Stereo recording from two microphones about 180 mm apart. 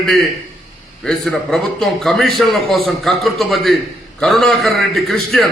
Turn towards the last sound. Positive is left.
turn(degrees=0)  # may be behind; listen again after turning